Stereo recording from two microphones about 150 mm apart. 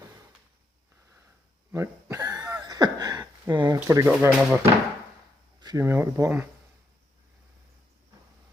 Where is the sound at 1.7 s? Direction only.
20° right (ahead or behind).